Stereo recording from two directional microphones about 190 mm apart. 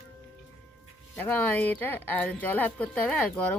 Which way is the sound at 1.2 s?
10° left (ahead or behind).